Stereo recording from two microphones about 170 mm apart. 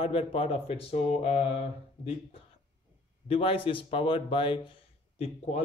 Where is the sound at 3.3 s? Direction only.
30° left (ahead or behind).